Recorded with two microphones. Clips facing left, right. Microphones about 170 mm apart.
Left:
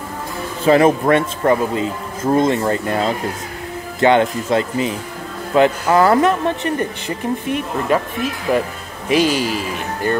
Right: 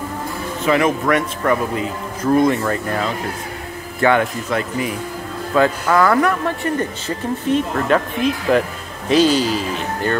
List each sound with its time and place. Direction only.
0.7 s speech: 35° left (ahead or behind); by 8.0 s 10° left (ahead or behind)
9.1 s speech: 10° left (ahead or behind)